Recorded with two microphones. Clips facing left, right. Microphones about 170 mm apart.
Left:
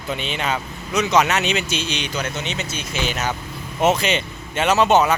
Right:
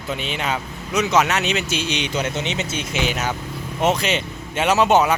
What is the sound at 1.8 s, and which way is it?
Speech, 20° right (ahead or behind).